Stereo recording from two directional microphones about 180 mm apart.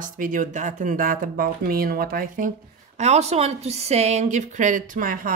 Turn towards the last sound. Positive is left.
turn(degrees=-50)  # may be behind; listen again after turning